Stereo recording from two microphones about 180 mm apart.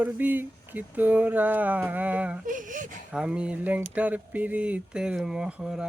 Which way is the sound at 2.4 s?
45° right (ahead or behind).